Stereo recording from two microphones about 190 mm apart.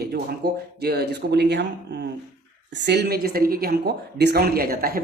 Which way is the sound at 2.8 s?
60° right (ahead or behind).